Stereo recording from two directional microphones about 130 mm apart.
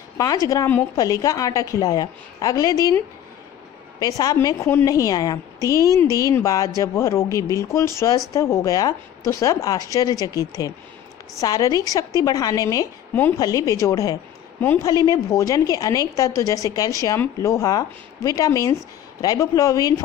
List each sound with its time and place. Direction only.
0.2 s a woman's voice: 25° left (ahead or behind)
4.2 s a woman's voice: 30° left (ahead or behind)